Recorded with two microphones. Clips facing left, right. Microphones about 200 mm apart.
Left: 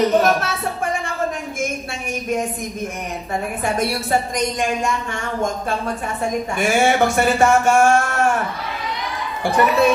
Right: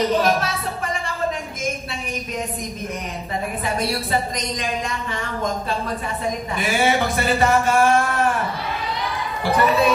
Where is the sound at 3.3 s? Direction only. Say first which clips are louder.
Left 2 dB; 50° left (ahead or behind).